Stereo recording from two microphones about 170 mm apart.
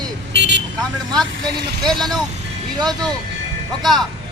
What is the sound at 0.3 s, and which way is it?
Vehicle, 90° right.